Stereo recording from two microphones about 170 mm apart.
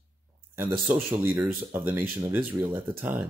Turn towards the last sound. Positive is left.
turn(degrees=-10)  # may be behind; listen again after turning